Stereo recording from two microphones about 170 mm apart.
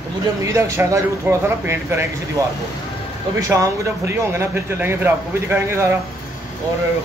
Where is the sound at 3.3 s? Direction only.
20° right (ahead or behind).